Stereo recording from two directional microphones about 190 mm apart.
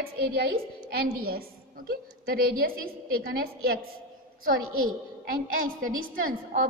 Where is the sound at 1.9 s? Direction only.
50° right (ahead or behind).